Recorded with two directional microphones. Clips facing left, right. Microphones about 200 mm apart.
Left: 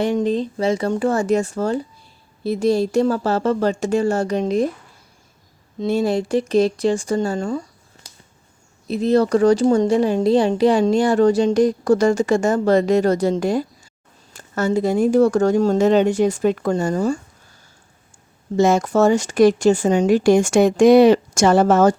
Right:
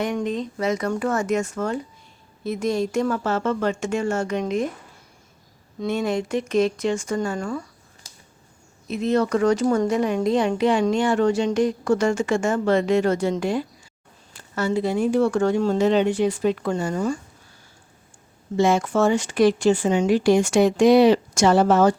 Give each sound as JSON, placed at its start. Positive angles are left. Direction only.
{"t": 0.0, "sound": "speech", "side_deg": 30}
{"t": 5.8, "sound": "speech", "side_deg": 35}
{"t": 8.9, "sound": "speech", "side_deg": 35}
{"t": 18.5, "sound": "speech", "side_deg": 45}